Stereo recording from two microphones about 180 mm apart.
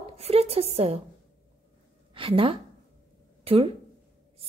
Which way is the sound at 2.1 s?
30° right (ahead or behind).